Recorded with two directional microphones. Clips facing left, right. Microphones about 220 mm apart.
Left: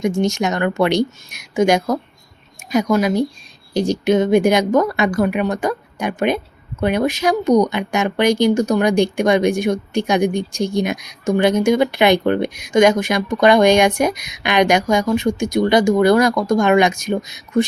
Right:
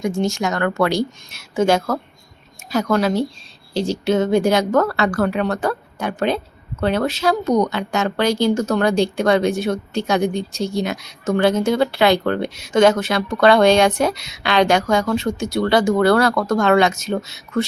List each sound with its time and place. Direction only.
0.0 s speech: 20° left (ahead or behind)